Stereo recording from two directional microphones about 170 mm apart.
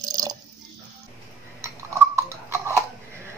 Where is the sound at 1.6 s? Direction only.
15° right (ahead or behind).